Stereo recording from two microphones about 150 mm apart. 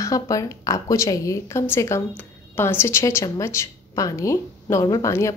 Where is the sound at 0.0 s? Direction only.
20° left (ahead or behind).